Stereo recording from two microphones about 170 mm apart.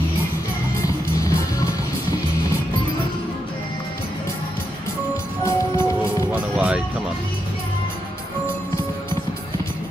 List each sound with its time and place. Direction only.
0.8 s music: 20° left (ahead or behind)
5.4 s music: 15° left (ahead or behind)
6.3 s music: 5° right (ahead or behind)